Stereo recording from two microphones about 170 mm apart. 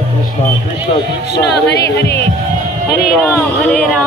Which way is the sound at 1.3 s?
80° left.